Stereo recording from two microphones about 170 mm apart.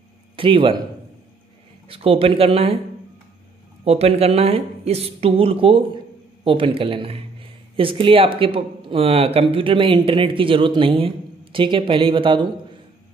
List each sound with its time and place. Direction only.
0.4 s speech: 30° right (ahead or behind)
1.9 s speech: 35° right (ahead or behind)
3.8 s speech: 35° right (ahead or behind)